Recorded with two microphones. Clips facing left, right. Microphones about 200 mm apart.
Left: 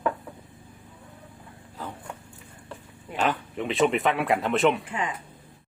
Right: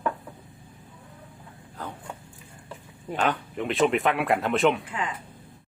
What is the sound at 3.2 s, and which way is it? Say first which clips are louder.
Speech: even; centre (ahead or behind).